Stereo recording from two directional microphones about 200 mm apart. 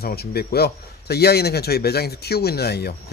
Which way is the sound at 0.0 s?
50° left (ahead or behind).